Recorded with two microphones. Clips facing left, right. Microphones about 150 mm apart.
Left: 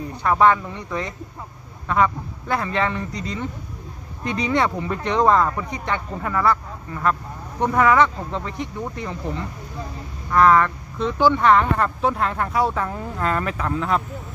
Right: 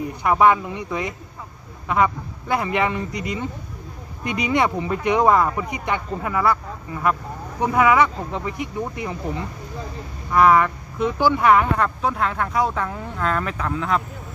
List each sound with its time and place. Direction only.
0.0 s speech: 15° right (ahead or behind)
10.3 s speech: 10° right (ahead or behind)